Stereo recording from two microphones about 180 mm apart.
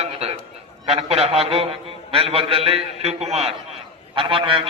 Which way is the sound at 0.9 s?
35° right (ahead or behind).